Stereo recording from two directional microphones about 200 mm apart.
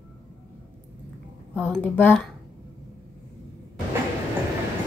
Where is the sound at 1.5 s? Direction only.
5° right (ahead or behind).